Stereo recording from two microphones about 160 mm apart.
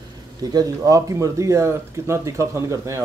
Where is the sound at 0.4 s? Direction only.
25° right (ahead or behind).